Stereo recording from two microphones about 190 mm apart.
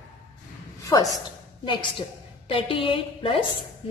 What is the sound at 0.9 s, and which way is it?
A woman's voice, 20° left (ahead or behind).